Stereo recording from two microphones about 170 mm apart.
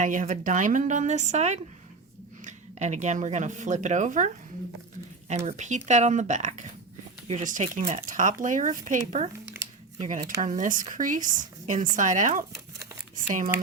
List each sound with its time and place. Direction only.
0.0 s speech: 50° right (ahead or behind)
5.5 s speech: 45° right (ahead or behind)